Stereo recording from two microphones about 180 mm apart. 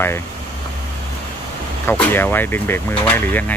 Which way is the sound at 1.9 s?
10° left (ahead or behind).